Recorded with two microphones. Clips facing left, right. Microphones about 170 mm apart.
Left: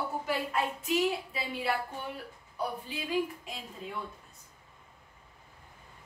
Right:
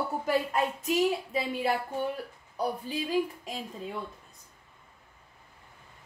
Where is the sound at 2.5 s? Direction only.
40° right (ahead or behind).